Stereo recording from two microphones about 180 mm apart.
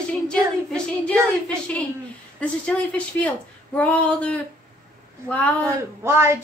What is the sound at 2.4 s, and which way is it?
A woman's voice, 5° left (ahead or behind).